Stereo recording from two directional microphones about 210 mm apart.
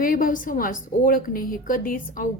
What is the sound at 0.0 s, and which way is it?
A woman's voice, 40° left (ahead or behind).